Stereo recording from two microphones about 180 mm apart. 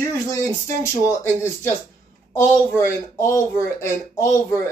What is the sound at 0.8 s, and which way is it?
Speech, 15° left (ahead or behind).